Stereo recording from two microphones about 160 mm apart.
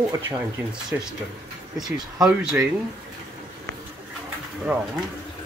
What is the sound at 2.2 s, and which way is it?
Speech, 5° right (ahead or behind).